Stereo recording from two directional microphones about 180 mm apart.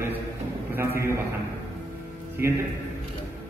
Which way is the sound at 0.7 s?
15° right (ahead or behind).